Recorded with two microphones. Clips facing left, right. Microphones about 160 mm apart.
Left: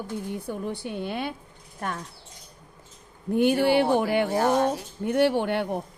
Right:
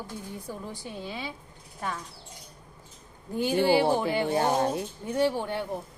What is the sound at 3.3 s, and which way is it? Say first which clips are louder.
A woman's voice: left 3 dB; 60° left (ahead or behind).